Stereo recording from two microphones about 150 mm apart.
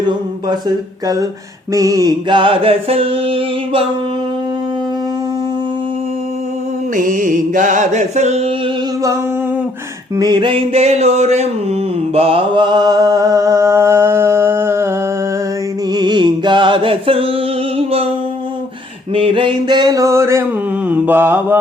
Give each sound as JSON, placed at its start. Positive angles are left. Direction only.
{"t": 1.0, "sound": "mantra", "side_deg": -25}
{"t": 6.9, "sound": "mantra", "side_deg": -60}
{"t": 10.2, "sound": "a sound", "side_deg": -30}
{"t": 12.1, "sound": "mantra", "side_deg": -40}
{"t": 15.9, "sound": "music", "side_deg": -30}
{"t": 19.1, "sound": "mantra", "side_deg": -35}